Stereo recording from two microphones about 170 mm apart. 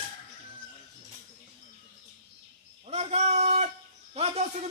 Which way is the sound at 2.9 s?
40° right (ahead or behind).